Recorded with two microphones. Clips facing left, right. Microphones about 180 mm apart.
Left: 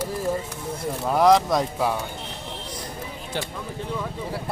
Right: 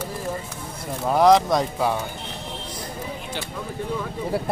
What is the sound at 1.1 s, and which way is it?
Speech, centre (ahead or behind).